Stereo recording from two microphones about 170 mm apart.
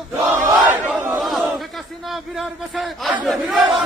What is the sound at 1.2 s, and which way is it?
Battle cry, centre (ahead or behind).